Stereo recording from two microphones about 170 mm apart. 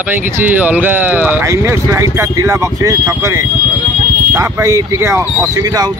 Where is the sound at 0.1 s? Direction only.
10° right (ahead or behind).